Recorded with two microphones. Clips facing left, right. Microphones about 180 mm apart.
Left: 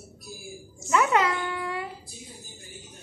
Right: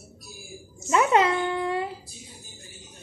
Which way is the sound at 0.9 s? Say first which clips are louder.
Right 2 dB; 25° right (ahead or behind).